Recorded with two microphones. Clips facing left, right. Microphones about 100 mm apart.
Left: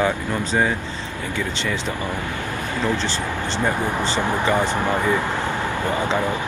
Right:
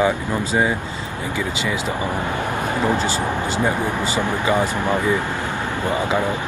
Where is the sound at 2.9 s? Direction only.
10° right (ahead or behind).